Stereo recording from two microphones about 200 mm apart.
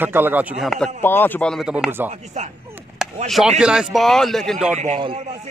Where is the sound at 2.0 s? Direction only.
35° right (ahead or behind).